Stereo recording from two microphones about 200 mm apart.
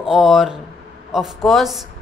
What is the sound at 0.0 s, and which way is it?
Speech, centre (ahead or behind).